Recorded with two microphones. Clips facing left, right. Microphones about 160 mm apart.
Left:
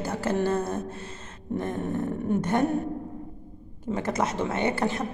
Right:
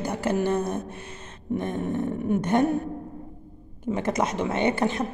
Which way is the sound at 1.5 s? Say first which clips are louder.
Right 1 dB; 20° right (ahead or behind).